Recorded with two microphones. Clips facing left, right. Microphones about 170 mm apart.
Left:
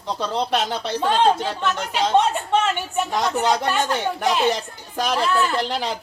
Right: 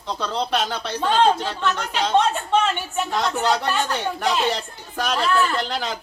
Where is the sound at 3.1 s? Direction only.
15° left (ahead or behind).